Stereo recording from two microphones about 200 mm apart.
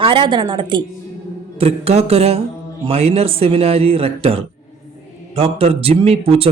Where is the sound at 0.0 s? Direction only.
25° right (ahead or behind).